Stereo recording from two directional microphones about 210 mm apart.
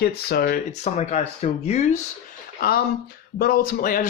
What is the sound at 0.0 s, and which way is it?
Speech, 50° left (ahead or behind).